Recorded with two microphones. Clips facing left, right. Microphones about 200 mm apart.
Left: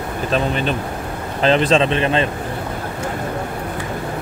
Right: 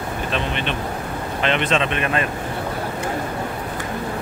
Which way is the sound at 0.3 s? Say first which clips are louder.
Left 7 dB; 40° left (ahead or behind).